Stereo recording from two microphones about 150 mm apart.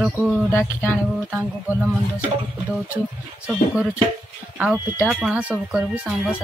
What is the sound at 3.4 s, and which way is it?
Speech, 5° right (ahead or behind).